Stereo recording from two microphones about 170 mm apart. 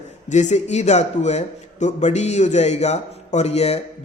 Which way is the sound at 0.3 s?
45° left (ahead or behind).